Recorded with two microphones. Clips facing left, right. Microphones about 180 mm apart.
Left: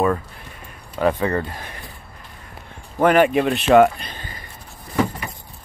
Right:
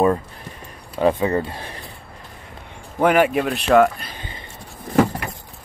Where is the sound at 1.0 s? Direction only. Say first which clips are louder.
Right 2 dB; 20° right (ahead or behind).